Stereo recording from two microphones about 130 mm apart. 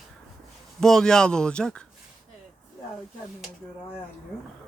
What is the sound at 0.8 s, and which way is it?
Speech, 5° left (ahead or behind).